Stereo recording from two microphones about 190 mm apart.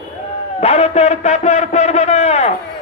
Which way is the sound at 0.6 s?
35° left (ahead or behind).